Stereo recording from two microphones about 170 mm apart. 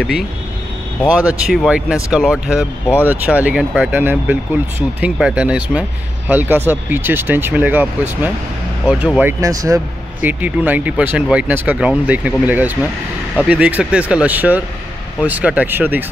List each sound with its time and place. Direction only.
1.1 s speech: 5° right (ahead or behind)
9.4 s speech: 20° right (ahead or behind)